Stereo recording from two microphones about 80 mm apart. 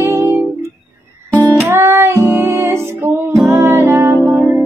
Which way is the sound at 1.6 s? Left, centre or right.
Right.